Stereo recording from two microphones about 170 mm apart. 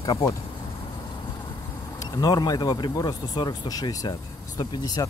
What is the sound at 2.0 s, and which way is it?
Speech, 25° left (ahead or behind).